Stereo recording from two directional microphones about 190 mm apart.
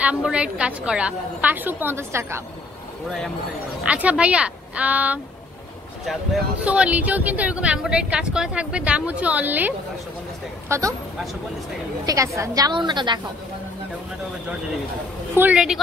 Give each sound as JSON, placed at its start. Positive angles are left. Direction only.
{"t": 0.0, "sound": "speech", "side_deg": -5}
{"t": 3.8, "sound": "speech", "side_deg": -5}
{"t": 6.6, "sound": "speech", "side_deg": -5}
{"t": 12.1, "sound": "a woman's voice", "side_deg": -15}
{"t": 15.3, "sound": "a woman's voice", "side_deg": -5}